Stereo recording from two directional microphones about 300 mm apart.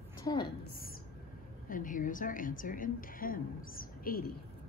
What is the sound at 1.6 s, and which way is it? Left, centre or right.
A woman's voice, left.